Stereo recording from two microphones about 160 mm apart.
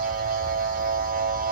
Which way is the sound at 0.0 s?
65° right (ahead or behind).